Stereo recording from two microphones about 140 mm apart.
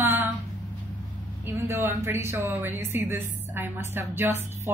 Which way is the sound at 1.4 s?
20° right (ahead or behind).